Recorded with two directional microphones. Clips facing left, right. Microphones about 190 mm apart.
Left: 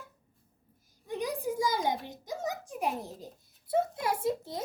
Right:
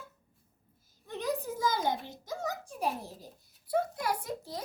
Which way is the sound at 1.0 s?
15° left (ahead or behind).